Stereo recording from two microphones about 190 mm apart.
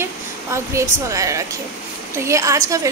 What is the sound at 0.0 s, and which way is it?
A woman's voice, 15° right (ahead or behind).